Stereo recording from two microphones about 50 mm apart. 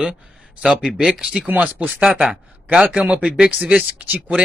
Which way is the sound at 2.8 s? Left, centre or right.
Right.